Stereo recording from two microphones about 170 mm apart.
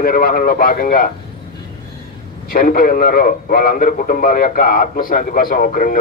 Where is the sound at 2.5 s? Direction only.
55° left (ahead or behind).